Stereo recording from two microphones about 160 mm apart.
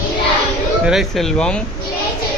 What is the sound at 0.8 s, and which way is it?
Speech, centre (ahead or behind).